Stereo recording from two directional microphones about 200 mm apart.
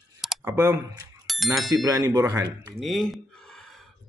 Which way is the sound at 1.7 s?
20° right (ahead or behind).